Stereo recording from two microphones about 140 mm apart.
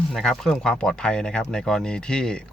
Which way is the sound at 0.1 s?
5° left (ahead or behind).